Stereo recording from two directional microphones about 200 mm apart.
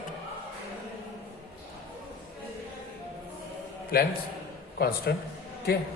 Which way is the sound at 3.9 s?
50° left (ahead or behind).